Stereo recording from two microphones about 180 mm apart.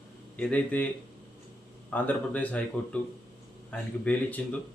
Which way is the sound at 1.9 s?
10° left (ahead or behind).